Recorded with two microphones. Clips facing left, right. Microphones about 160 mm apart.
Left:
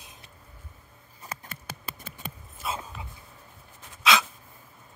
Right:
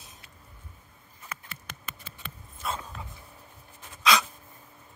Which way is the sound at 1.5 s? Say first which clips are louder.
Left 3 dB; 45° left (ahead or behind).